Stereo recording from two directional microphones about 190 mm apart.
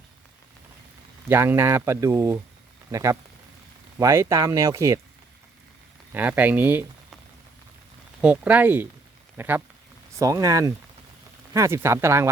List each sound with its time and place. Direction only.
1.3 s speech: 10° right (ahead or behind)
6.1 s speech: 10° right (ahead or behind)
8.2 s speech: 5° right (ahead or behind)